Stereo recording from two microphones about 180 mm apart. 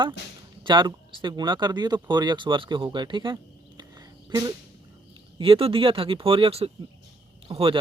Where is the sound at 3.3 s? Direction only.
20° right (ahead or behind).